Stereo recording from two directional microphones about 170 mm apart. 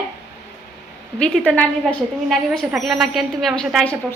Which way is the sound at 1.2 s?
5° left (ahead or behind).